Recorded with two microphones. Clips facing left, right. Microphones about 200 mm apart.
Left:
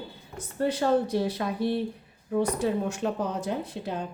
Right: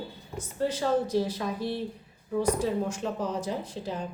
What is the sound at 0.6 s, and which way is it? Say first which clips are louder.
A woman's voice: left 2 dB; 60° left (ahead or behind).